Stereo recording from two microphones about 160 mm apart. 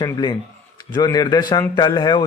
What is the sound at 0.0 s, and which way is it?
A man's voice, 25° left (ahead or behind).